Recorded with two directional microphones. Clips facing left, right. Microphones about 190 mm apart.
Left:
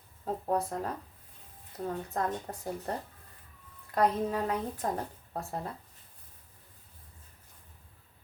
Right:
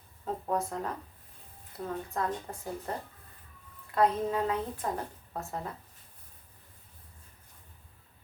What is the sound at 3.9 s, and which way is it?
A woman's voice, 40° left (ahead or behind).